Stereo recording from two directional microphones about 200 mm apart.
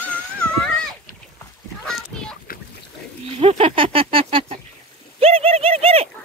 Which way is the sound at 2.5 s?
45° left (ahead or behind).